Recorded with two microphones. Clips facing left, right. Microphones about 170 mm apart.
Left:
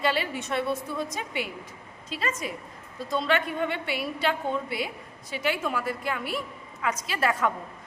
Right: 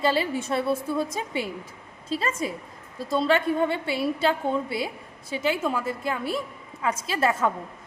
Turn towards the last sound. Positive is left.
turn(degrees=-25)  # may be behind; listen again after turning